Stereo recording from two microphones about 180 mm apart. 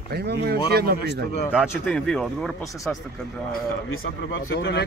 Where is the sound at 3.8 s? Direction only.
90° left.